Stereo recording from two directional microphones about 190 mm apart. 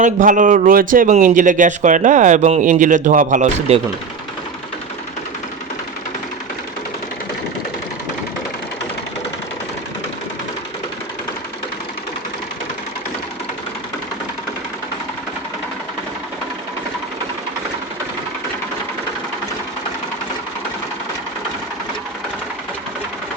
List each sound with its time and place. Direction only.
0.0 s a man's voice: 45° right (ahead or behind)